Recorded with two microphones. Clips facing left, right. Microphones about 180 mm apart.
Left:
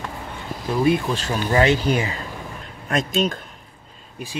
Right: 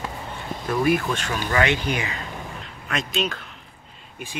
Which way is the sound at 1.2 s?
35° left (ahead or behind).